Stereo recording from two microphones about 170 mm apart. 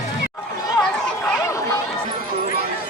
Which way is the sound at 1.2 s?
20° left (ahead or behind).